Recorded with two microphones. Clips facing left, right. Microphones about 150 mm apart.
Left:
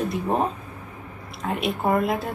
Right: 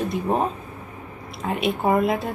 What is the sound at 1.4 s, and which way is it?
Speech, centre (ahead or behind).